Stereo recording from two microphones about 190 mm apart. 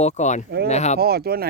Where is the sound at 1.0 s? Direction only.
55° right (ahead or behind).